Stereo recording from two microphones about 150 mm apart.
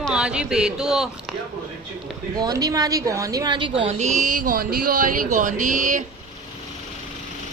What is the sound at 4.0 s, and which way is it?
Speech, 55° right (ahead or behind).